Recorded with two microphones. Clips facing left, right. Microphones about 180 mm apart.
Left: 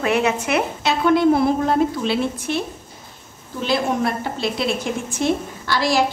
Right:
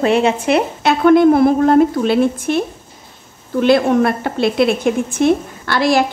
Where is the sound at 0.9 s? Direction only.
55° right (ahead or behind).